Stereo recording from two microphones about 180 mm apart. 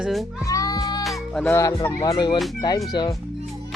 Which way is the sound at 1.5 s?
20° left (ahead or behind).